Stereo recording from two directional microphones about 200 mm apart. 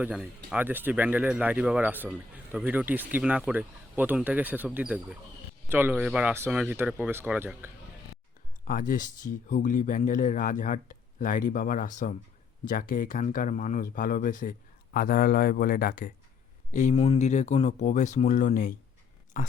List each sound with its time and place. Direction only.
0.0 s speech: 5° right (ahead or behind)
8.6 s a man's voice: 45° left (ahead or behind)
16.7 s speech: 35° left (ahead or behind)